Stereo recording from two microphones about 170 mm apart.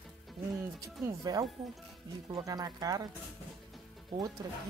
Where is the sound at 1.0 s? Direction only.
20° right (ahead or behind).